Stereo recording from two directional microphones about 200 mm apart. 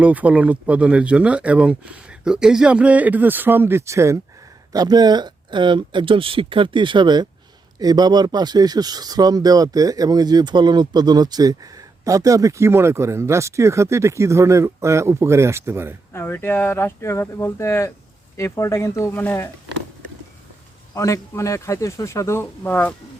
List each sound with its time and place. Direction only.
0.0 s speech: 5° right (ahead or behind)
16.1 s speech: 10° left (ahead or behind)
20.9 s speech: 15° left (ahead or behind)